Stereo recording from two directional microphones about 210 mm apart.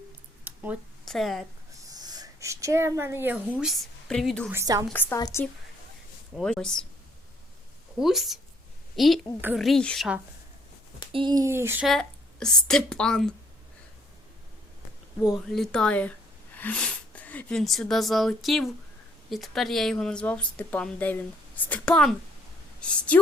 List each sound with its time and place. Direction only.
0.4 s a sound: 10° right (ahead or behind)
1.0 s speech: centre (ahead or behind)
1.8 s speech: 20° right (ahead or behind); by 4.4 s centre (ahead or behind)
4.5 s a sound: 15° right (ahead or behind)
4.9 s a woman's voice: 10° left (ahead or behind)
6.3 s a woman's voice: 5° left (ahead or behind)
7.9 s a woman's voice: centre (ahead or behind)
11.1 s a sound: 20° right (ahead or behind)
11.9 s a woman's voice: 5° left (ahead or behind)
15.2 s a woman's voice: centre (ahead or behind)